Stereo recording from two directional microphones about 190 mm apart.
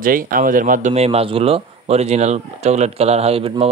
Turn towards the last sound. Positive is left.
turn(degrees=-30)  # may be behind; listen again after turning